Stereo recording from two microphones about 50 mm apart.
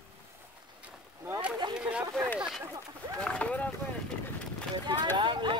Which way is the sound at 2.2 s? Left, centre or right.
Centre.